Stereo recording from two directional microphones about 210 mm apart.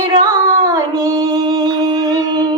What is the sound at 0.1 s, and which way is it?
Female singing, 20° right (ahead or behind).